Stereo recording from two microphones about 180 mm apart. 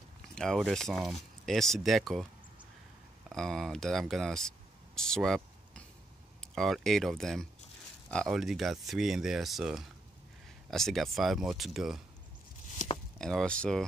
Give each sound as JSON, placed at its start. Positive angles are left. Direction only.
{"t": 0.3, "sound": "speech", "side_deg": 0}
{"t": 3.3, "sound": "speech", "side_deg": 0}
{"t": 12.7, "sound": "a sound", "side_deg": 40}
{"t": 13.2, "sound": "speech", "side_deg": 5}